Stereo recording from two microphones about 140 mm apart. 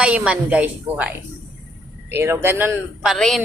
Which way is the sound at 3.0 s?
Centre (ahead or behind).